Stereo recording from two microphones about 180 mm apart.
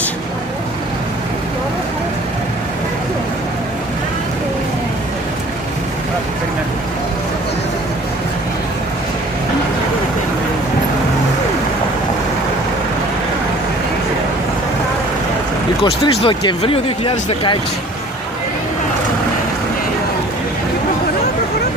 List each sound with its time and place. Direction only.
15.8 s speech: 25° left (ahead or behind)